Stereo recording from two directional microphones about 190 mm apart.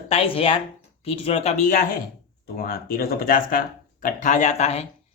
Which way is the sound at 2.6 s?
50° left (ahead or behind).